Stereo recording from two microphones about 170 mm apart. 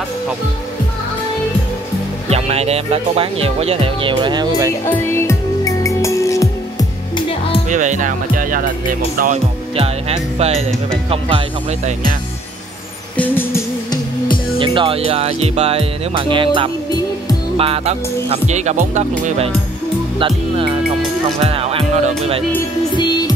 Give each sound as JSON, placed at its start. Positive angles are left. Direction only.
{"t": 2.2, "sound": "speech", "side_deg": -40}
{"t": 4.8, "sound": "music", "side_deg": 15}
{"t": 7.7, "sound": "speech", "side_deg": -45}
{"t": 9.8, "sound": "speech", "side_deg": -35}
{"t": 13.2, "sound": "music", "side_deg": 10}
{"t": 14.6, "sound": "speech", "side_deg": -30}
{"t": 22.9, "sound": "music", "side_deg": 25}